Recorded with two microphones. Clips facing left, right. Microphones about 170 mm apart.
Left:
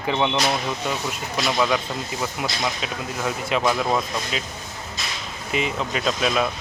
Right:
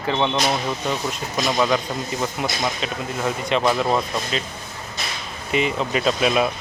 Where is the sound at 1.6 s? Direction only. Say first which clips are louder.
Right 2 dB; centre (ahead or behind).